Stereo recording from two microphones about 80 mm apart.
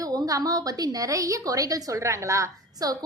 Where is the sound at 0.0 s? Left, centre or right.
Right.